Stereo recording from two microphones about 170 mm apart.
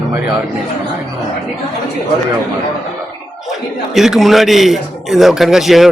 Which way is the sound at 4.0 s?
Centre (ahead or behind).